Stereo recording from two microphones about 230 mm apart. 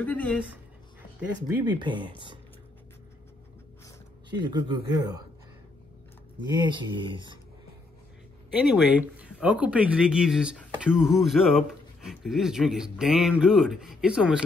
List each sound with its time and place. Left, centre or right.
0.0 s speech: centre
1.8 s speech: right
4.3 s speech: centre
6.5 s speech: centre
8.5 s speech: centre